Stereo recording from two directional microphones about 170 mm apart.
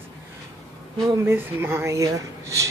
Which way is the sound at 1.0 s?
15° right (ahead or behind).